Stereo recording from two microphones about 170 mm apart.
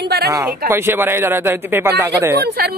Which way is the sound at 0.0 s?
70° right (ahead or behind).